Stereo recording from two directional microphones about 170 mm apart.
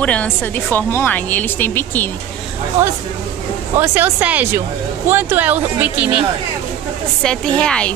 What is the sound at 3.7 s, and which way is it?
Speech, 10° right (ahead or behind).